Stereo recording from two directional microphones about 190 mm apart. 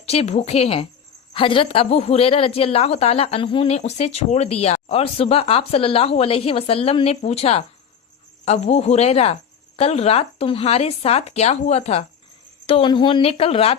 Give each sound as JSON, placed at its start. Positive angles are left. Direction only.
{"t": 0.0, "sound": "a woman's voice", "side_deg": 35}